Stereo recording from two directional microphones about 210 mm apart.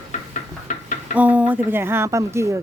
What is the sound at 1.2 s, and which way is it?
Speech, 5° right (ahead or behind).